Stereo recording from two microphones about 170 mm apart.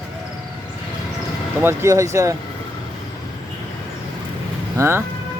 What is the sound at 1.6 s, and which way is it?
Speech, 15° right (ahead or behind).